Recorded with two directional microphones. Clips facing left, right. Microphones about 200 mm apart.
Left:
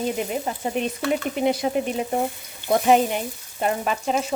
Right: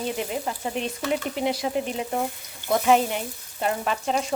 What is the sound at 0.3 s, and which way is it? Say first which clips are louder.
Frying: left 2 dB; 20° left (ahead or behind).